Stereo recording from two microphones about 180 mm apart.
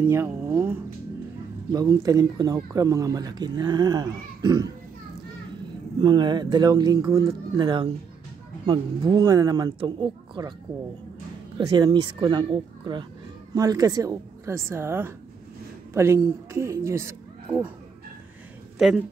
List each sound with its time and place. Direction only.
0.0 s a woman's voice: 15° right (ahead or behind)
5.9 s speech: 25° right (ahead or behind)
11.5 s a woman's voice: 25° right (ahead or behind); by 17.7 s 10° right (ahead or behind)
18.8 s a woman's voice: centre (ahead or behind)